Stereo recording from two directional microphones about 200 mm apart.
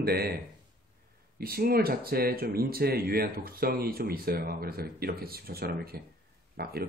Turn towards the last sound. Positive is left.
turn(degrees=-50)  # may be behind; listen again after turning